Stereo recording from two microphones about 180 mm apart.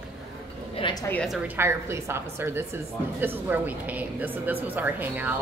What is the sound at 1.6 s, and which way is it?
Speech, 15° right (ahead or behind).